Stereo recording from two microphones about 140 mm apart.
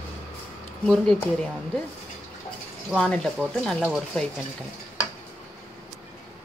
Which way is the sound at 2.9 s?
5° left (ahead or behind).